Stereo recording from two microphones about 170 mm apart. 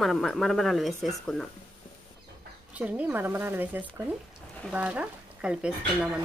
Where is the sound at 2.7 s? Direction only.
10° right (ahead or behind).